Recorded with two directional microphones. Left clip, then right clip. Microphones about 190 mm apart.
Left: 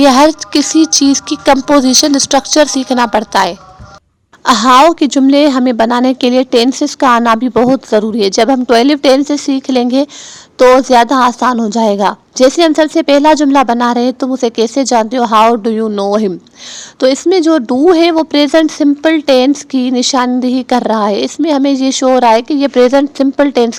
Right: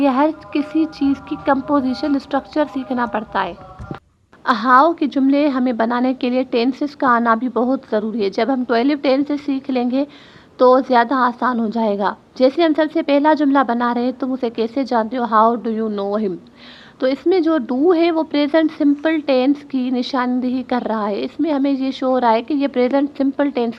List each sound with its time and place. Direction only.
0.0 s a woman's voice: 35° left (ahead or behind)
4.4 s speech: 50° left (ahead or behind)